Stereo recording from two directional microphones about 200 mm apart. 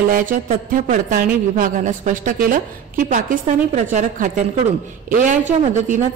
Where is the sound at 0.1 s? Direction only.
40° right (ahead or behind).